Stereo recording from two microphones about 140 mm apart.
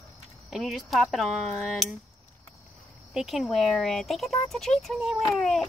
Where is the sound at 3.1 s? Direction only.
5° right (ahead or behind).